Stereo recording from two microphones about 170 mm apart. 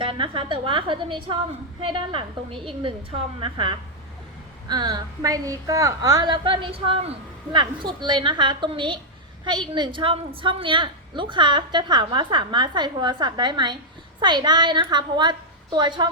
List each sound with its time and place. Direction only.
0.0 s a woman's voice: 30° right (ahead or behind)